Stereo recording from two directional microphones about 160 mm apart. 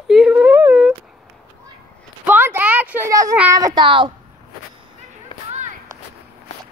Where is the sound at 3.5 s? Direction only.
25° right (ahead or behind).